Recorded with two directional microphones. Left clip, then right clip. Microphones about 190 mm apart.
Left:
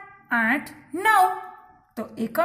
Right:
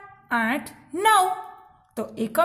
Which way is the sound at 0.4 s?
50° right (ahead or behind).